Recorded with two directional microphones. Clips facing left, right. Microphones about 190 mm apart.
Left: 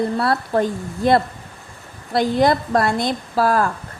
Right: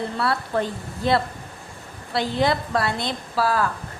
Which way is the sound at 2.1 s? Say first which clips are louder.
Left 5 dB; 45° left (ahead or behind).